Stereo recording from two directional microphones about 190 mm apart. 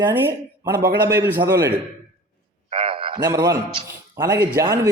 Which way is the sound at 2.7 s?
30° right (ahead or behind).